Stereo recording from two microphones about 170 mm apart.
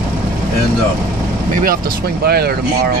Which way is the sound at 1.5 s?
55° right (ahead or behind).